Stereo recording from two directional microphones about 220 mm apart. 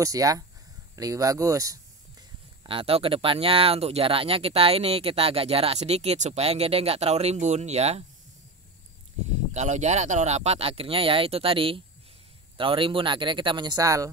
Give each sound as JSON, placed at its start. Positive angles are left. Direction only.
{"t": 0.0, "sound": "speech", "side_deg": -15}
{"t": 9.3, "sound": "speech", "side_deg": -30}